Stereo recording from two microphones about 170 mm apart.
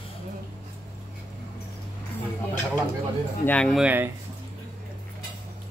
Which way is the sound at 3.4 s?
5° left (ahead or behind).